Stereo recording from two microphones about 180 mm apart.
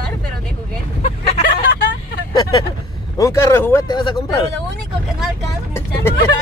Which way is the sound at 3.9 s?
25° left (ahead or behind).